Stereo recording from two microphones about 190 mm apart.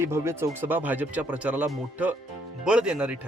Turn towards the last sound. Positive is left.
turn(degrees=-5)  # may be behind; listen again after turning